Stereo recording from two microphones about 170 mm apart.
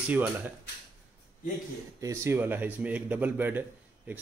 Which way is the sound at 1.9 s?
15° right (ahead or behind).